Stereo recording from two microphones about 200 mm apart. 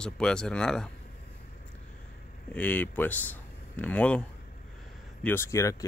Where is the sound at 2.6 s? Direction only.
10° left (ahead or behind).